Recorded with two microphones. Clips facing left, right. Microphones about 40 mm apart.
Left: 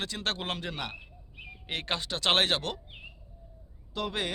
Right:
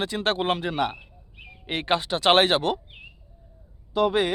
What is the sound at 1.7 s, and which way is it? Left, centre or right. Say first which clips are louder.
Speech: right 8 dB; centre.